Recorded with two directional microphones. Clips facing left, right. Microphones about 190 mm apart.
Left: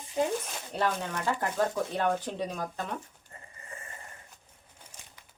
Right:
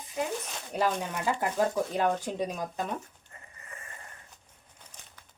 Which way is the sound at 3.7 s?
30° left (ahead or behind).